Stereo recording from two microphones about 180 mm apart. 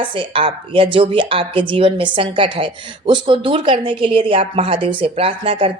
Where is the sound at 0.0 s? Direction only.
30° right (ahead or behind).